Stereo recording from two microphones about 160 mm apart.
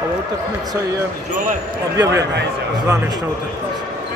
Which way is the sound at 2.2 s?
90° right.